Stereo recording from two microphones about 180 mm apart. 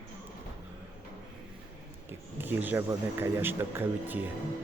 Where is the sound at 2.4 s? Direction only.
10° right (ahead or behind).